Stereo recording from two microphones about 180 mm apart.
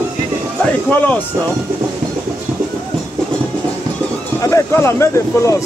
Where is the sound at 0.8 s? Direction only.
10° left (ahead or behind).